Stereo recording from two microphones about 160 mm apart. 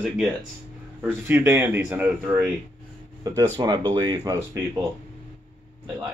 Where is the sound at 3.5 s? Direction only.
25° right (ahead or behind).